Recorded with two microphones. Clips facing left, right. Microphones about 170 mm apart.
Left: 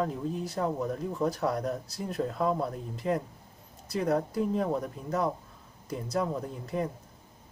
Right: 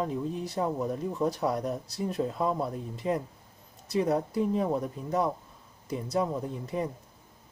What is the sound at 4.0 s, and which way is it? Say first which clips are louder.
Speech: right 1 dB; 5° right (ahead or behind).